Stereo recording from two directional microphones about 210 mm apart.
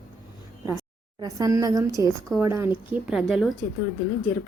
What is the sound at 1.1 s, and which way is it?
A woman's voice, 15° right (ahead or behind).